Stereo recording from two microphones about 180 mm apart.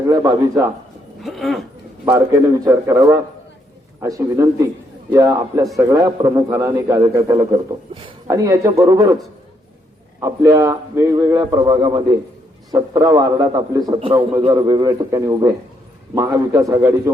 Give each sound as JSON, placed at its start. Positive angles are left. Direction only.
{"t": 0.1, "sound": "a man's voice", "side_deg": -20}
{"t": 1.2, "sound": "a sound", "side_deg": 0}
{"t": 2.0, "sound": "a man's voice", "side_deg": -15}
{"t": 10.2, "sound": "a man's voice", "side_deg": -20}